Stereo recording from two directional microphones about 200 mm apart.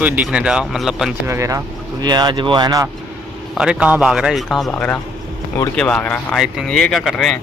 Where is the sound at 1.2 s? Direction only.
15° right (ahead or behind).